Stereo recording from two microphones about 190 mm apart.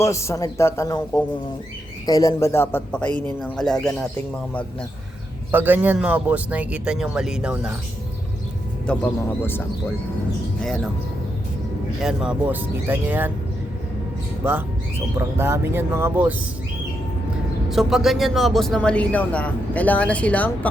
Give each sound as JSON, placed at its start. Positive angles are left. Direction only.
{"t": 0.0, "sound": "a man's voice", "side_deg": 15}
{"t": 5.5, "sound": "a man's voice", "side_deg": -10}
{"t": 8.9, "sound": "a man's voice", "side_deg": 5}
{"t": 12.0, "sound": "a man's voice", "side_deg": -5}
{"t": 14.4, "sound": "a man's voice", "side_deg": -15}
{"t": 17.7, "sound": "a man's voice", "side_deg": 0}